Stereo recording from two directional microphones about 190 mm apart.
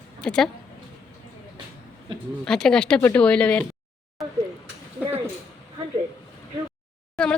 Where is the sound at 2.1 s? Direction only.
25° right (ahead or behind).